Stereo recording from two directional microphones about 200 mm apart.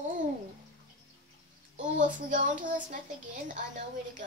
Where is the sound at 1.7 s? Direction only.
40° right (ahead or behind).